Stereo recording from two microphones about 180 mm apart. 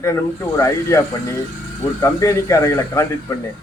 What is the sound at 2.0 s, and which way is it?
A man's voice, 15° left (ahead or behind).